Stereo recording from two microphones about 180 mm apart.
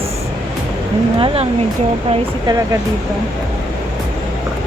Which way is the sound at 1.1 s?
30° right (ahead or behind).